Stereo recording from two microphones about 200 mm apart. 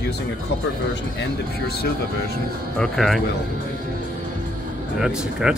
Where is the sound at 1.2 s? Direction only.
55° left (ahead or behind).